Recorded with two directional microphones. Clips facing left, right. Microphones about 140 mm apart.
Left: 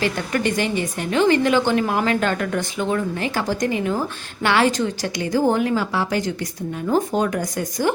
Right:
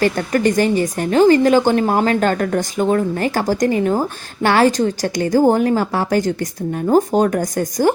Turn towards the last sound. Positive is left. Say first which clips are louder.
# right 5 dB
turn(degrees=-45)  # may be behind; listen again after turning